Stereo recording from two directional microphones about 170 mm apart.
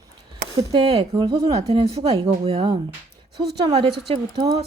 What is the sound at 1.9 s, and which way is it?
Speech, 35° right (ahead or behind).